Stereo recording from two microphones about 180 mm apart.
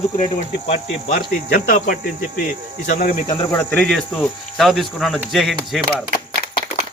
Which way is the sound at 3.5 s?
5° left (ahead or behind).